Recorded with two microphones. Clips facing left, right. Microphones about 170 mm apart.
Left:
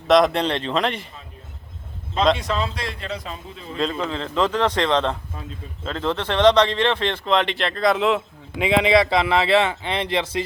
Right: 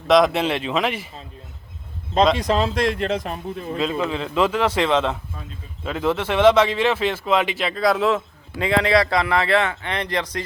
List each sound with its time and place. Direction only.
0.1 s speech: 5° right (ahead or behind)
2.4 s a man's voice: 45° right (ahead or behind)
3.2 s a man's voice: 60° right (ahead or behind)
3.8 s a man's voice: 5° right (ahead or behind)
8.5 s speech: 20° left (ahead or behind)